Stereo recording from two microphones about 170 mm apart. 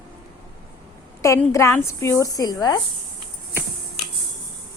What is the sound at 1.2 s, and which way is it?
A woman's voice, 15° left (ahead or behind).